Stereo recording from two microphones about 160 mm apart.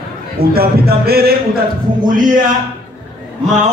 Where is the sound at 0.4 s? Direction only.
75° right (ahead or behind).